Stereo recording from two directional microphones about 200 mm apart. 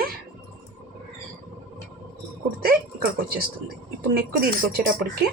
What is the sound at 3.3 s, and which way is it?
Speech, 50° right (ahead or behind).